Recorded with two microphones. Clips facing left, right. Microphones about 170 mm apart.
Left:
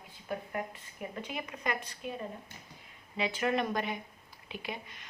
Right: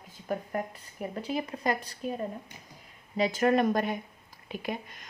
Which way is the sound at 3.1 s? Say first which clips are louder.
Right 6 dB; 40° right (ahead or behind).